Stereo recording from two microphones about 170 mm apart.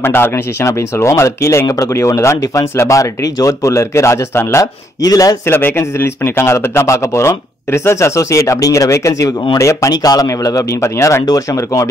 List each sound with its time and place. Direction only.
0.0 s speech: 15° left (ahead or behind)